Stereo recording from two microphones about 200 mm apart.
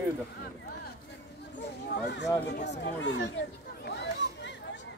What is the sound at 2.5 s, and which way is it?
Speech, 60° left (ahead or behind).